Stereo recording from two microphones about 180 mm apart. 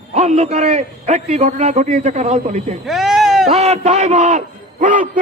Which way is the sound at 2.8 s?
Centre (ahead or behind).